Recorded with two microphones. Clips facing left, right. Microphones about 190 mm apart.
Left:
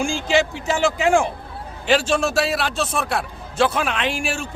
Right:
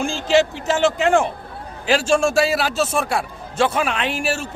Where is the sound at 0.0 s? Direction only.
Centre (ahead or behind).